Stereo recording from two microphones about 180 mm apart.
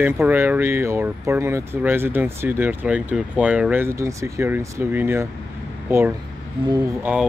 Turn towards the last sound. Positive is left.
turn(degrees=-5)  # may be behind; listen again after turning